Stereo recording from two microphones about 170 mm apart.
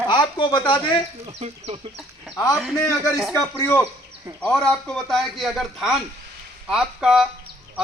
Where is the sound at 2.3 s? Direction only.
20° left (ahead or behind).